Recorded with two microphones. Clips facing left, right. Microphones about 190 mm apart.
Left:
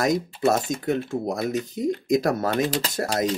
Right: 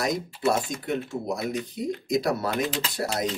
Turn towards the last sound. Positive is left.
turn(degrees=45)  # may be behind; listen again after turning